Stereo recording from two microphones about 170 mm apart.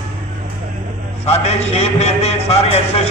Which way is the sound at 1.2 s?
40° left (ahead or behind).